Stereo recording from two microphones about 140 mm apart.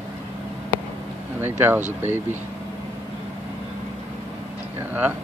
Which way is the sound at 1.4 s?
15° right (ahead or behind).